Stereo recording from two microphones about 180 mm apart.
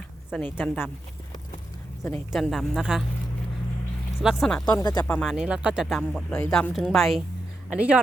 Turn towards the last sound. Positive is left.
turn(degrees=-5)  # may be behind; listen again after turning